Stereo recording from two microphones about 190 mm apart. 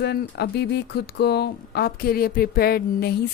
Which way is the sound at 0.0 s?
60° left (ahead or behind).